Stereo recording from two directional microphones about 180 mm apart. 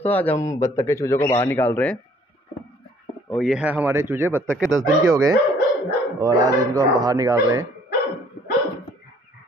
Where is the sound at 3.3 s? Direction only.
Centre (ahead or behind); by 7.6 s 20° right (ahead or behind).